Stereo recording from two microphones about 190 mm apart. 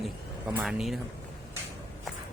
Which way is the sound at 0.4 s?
5° right (ahead or behind).